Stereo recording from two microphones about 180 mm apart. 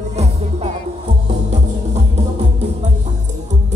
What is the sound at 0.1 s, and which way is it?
Music, 35° right (ahead or behind).